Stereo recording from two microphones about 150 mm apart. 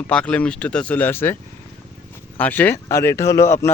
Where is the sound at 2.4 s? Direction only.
10° left (ahead or behind).